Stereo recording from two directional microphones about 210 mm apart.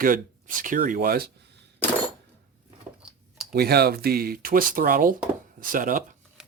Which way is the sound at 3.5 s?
50° right (ahead or behind).